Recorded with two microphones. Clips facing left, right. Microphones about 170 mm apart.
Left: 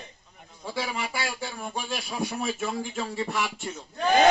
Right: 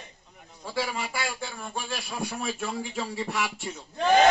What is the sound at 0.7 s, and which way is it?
Speech, centre (ahead or behind).